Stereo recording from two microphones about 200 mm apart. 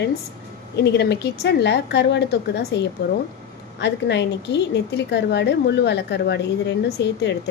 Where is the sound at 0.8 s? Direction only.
55° left (ahead or behind).